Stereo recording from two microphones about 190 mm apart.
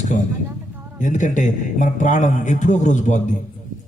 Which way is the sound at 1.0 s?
40° left (ahead or behind).